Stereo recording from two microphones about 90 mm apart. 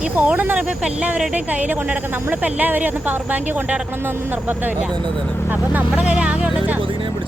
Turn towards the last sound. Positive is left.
turn(degrees=-15)  # may be behind; listen again after turning